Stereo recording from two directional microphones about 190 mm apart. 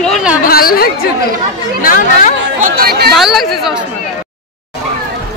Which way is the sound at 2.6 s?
50° right (ahead or behind).